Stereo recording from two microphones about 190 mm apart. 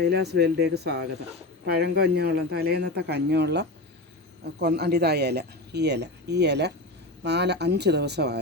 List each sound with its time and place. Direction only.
0.0 s speech: 60° right (ahead or behind)